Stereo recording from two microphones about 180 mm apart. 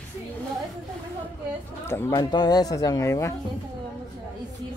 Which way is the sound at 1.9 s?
15° left (ahead or behind).